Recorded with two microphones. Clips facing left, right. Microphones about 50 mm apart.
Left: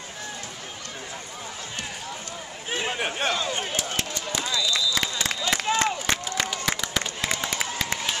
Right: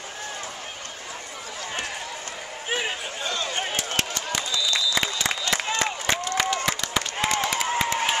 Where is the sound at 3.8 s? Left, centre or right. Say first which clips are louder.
Right 2 dB; right.